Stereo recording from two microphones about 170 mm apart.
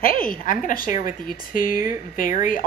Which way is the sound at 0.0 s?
55° left (ahead or behind).